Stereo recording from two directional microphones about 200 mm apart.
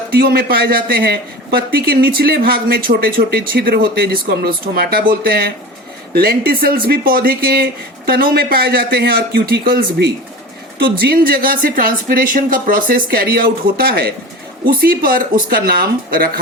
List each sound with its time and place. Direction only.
0.1 s a man's voice: 50° right (ahead or behind)